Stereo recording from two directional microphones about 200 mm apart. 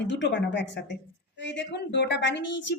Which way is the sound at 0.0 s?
60° left (ahead or behind).